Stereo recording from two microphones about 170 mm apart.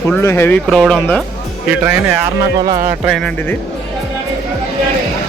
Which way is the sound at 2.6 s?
55° right (ahead or behind).